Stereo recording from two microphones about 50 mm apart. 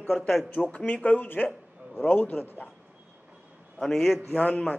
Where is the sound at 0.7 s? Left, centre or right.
Left.